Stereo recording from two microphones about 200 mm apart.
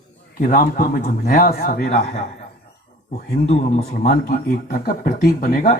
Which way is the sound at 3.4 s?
35° left (ahead or behind).